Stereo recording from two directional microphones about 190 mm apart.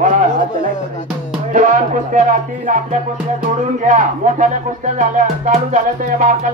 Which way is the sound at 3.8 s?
40° right (ahead or behind).